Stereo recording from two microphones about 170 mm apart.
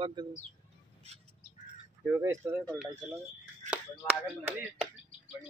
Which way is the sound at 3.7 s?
5° right (ahead or behind).